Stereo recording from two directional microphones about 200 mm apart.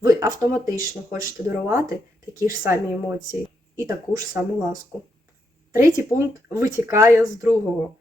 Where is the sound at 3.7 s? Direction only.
15° right (ahead or behind).